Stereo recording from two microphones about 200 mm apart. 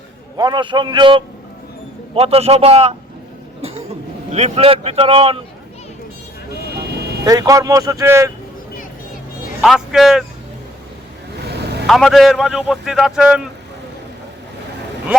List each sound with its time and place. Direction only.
0.3 s a man's voice: 20° right (ahead or behind)
7.3 s speech: 15° right (ahead or behind)
9.6 s a man's voice: centre (ahead or behind)
11.9 s a man's voice: centre (ahead or behind)